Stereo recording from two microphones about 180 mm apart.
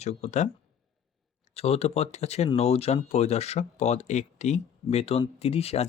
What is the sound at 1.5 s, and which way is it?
Speech, 35° left (ahead or behind).